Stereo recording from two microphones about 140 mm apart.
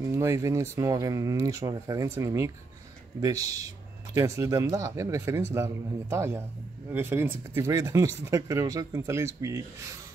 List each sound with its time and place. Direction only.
0.0 s speech: 20° right (ahead or behind)